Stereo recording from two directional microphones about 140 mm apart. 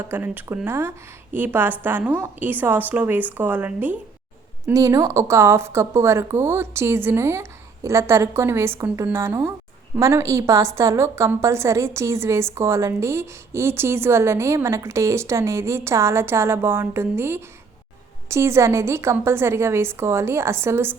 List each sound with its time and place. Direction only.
0.1 s speech: 15° right (ahead or behind)
4.6 s a woman's voice: 25° right (ahead or behind)